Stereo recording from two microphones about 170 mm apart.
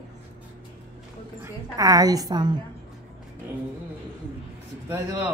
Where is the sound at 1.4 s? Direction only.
20° right (ahead or behind).